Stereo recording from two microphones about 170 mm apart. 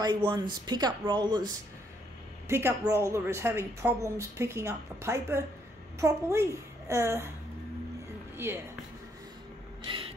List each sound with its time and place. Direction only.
0.0 s speech: 25° right (ahead or behind)
2.4 s a woman's voice: 15° right (ahead or behind)
8.4 s a woman's voice: 15° right (ahead or behind)
9.8 s gasp: 30° right (ahead or behind)